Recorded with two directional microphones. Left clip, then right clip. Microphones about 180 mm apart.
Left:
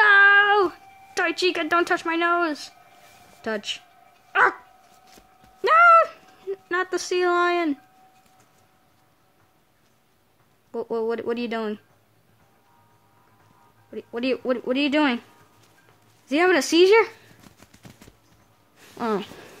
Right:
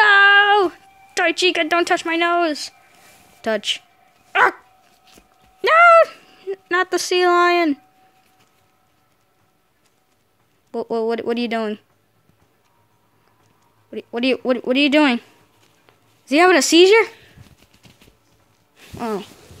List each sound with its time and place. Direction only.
0.0 s a sound: 10° right (ahead or behind)
3.4 s speech: 20° right (ahead or behind)
4.3 s dog: 15° right (ahead or behind)
5.6 s a sound: 15° right (ahead or behind)
10.7 s speech: 15° right (ahead or behind)
13.8 s speech: 20° right (ahead or behind)
16.3 s speech: 20° right (ahead or behind)